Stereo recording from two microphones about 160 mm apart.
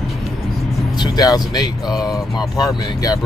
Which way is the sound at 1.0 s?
25° left (ahead or behind).